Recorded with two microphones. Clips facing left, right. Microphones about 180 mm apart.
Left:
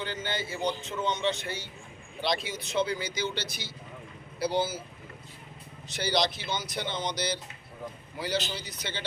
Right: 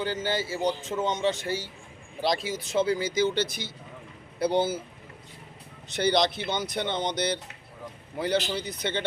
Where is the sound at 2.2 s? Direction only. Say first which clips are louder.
Right 3 dB; 40° right (ahead or behind).